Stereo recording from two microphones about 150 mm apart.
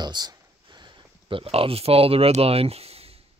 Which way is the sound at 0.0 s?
25° right (ahead or behind).